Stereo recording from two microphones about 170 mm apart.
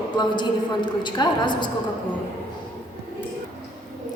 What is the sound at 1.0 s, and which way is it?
Speech, 25° left (ahead or behind).